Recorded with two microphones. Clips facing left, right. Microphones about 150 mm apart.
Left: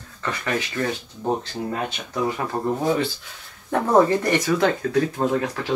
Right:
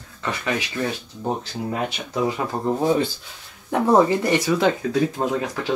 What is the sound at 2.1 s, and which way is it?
Speech, 20° right (ahead or behind).